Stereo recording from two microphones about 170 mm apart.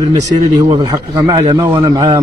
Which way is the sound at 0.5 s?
25° right (ahead or behind).